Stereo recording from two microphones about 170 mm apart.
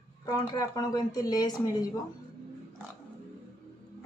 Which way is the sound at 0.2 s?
20° left (ahead or behind).